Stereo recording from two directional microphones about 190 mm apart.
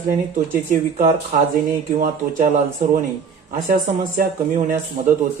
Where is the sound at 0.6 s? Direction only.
40° right (ahead or behind).